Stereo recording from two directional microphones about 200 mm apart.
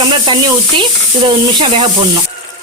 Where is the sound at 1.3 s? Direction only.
25° right (ahead or behind).